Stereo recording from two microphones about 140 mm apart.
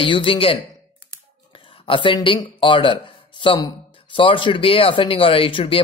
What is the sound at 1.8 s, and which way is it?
Speech, 40° left (ahead or behind).